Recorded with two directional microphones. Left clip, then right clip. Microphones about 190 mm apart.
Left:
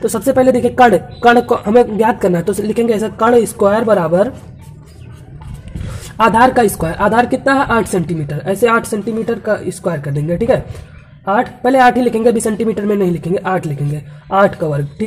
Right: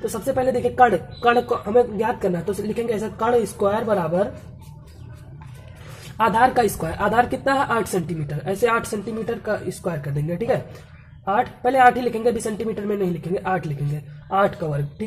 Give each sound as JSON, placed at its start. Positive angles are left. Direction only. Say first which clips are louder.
{"t": 0.0, "sound": "a woman's voice", "louder": "left 10 dB", "side_deg": 30}
{"t": 6.1, "sound": "a woman's voice", "louder": "left 7 dB", "side_deg": 25}